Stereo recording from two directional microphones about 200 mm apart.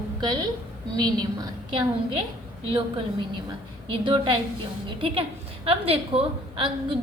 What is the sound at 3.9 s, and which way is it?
A woman's voice, 25° right (ahead or behind).